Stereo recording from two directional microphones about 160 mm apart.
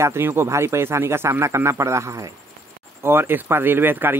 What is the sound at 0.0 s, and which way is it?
A man's voice, 15° right (ahead or behind).